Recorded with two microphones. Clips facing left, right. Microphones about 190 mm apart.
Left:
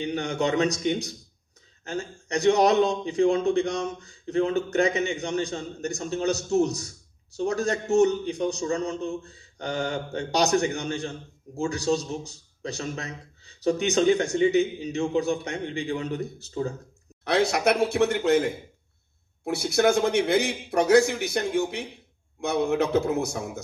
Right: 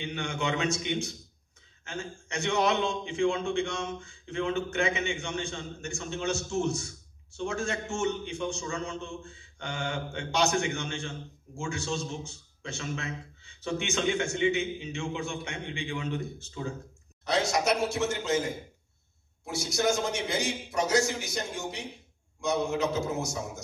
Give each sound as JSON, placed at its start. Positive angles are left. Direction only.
{"t": 0.0, "sound": "a man's voice", "side_deg": 40}
{"t": 17.2, "sound": "a man's voice", "side_deg": 60}